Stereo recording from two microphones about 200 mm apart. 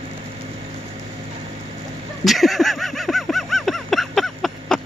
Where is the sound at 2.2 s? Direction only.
Centre (ahead or behind).